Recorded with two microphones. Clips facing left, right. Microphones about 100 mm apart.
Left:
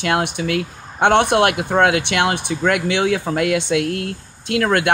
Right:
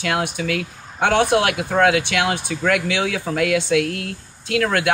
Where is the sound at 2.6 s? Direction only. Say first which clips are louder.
Left 3 dB; 35° left (ahead or behind).